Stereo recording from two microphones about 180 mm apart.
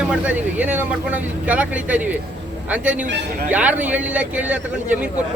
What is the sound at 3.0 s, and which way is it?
Speech, 75° right (ahead or behind).